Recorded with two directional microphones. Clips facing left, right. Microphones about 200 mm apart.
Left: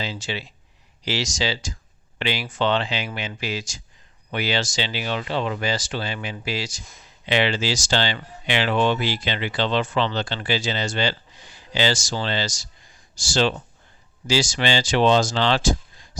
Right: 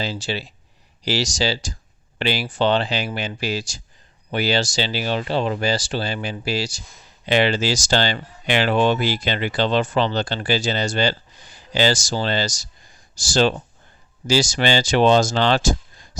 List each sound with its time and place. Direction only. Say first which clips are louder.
0.0 s speech: right 3 dB; 35° right (ahead or behind)